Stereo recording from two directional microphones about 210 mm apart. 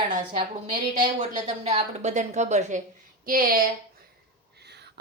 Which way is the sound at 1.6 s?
30° right (ahead or behind).